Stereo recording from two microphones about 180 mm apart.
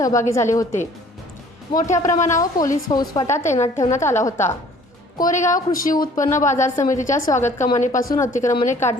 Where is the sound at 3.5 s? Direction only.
40° left (ahead or behind).